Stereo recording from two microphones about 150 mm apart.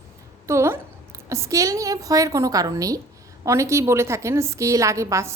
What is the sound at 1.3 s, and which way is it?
A woman's voice, 20° right (ahead or behind).